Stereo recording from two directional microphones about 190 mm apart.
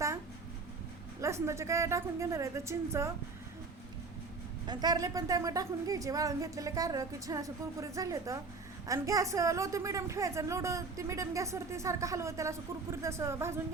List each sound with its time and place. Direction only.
1.2 s a woman's voice: 15° right (ahead or behind)
4.6 s a woman's voice: 20° right (ahead or behind)